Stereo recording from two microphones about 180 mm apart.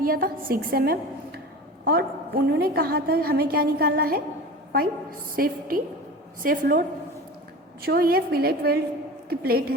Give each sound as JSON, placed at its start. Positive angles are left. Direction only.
{"t": 0.0, "sound": "a woman's voice", "side_deg": -50}
{"t": 5.4, "sound": "a woman's voice", "side_deg": -50}
{"t": 7.9, "sound": "a woman's voice", "side_deg": -55}